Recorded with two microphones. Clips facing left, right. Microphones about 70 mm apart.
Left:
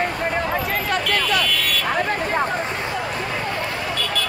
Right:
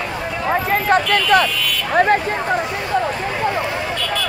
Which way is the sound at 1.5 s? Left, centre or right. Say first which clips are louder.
Even; left.